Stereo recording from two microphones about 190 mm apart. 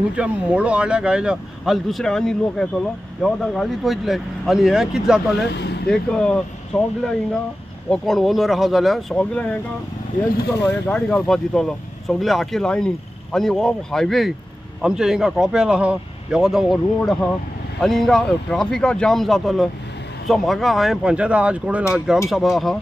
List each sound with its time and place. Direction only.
0.1 s speech: 5° right (ahead or behind)
5.5 s speech: 60° left (ahead or behind)
5.9 s speech: 5° left (ahead or behind)
7.9 s speech: centre (ahead or behind)
10.6 s speech: 5° left (ahead or behind)